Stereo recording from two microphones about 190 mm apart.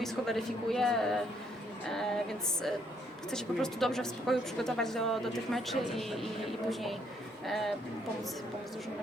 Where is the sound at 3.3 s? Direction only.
Centre (ahead or behind).